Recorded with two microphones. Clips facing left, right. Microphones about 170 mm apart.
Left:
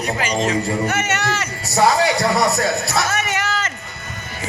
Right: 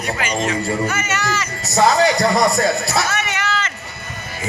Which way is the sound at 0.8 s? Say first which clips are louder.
Left 1 dB; 65° left (ahead or behind).